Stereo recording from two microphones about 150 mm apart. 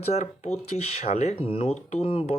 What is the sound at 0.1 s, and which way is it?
Speech, 50° left (ahead or behind).